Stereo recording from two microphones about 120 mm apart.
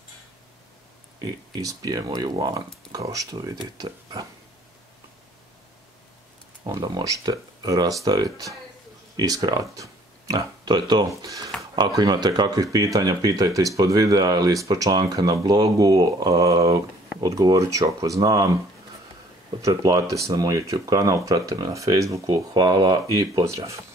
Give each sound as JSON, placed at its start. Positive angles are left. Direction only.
{"t": 1.2, "sound": "speech", "side_deg": -30}
{"t": 6.6, "sound": "speech", "side_deg": -35}
{"t": 19.6, "sound": "speech", "side_deg": -30}